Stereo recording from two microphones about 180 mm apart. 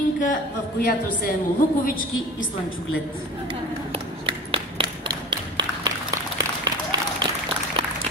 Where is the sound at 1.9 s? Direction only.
90° left.